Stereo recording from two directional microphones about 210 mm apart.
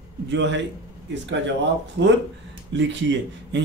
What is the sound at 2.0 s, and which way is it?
Mantra, 60° right (ahead or behind).